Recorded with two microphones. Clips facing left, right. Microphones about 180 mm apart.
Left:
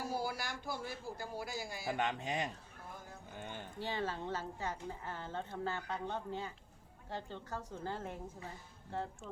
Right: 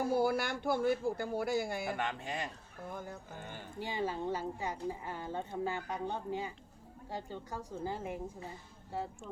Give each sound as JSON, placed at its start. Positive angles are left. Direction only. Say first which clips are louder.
{"t": 0.0, "sound": "a man's voice", "louder": "right 9 dB", "side_deg": -55}
{"t": 1.9, "sound": "speech", "louder": "left 1 dB", "side_deg": 20}
{"t": 3.8, "sound": "speech", "louder": "right 3 dB", "side_deg": -15}